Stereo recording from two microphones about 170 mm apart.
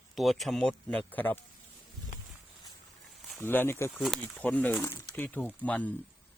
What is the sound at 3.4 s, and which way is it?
Speech, 15° left (ahead or behind).